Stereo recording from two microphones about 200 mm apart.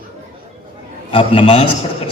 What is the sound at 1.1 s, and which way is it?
Speech, 25° left (ahead or behind).